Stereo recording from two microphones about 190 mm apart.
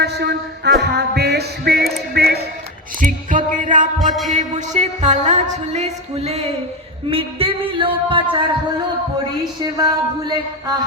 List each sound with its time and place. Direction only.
0.0 s music: 60° right (ahead or behind)
2.1 s a sound: 55° right (ahead or behind)
3.0 s music: 45° right (ahead or behind)
7.1 s speech: 30° right (ahead or behind)